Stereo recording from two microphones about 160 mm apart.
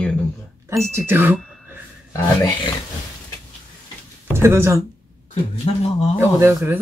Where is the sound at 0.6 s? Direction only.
15° right (ahead or behind).